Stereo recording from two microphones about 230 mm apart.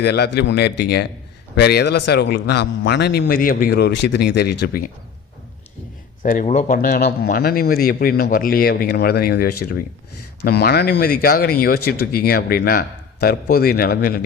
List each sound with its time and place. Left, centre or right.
0.0 s a man's voice: left
6.2 s a man's voice: left